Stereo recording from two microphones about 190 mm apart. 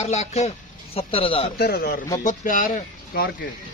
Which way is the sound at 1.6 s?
55° left (ahead or behind).